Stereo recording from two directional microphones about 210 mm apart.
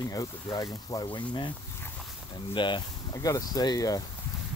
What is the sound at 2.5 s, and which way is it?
Speech, 20° left (ahead or behind).